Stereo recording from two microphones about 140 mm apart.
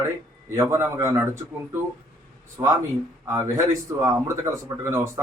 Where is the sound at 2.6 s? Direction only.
15° right (ahead or behind).